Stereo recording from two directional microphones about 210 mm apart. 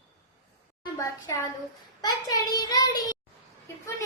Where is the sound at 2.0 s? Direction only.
20° left (ahead or behind).